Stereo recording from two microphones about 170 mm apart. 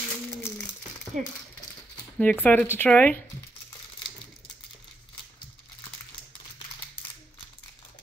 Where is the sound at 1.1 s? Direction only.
45° right (ahead or behind).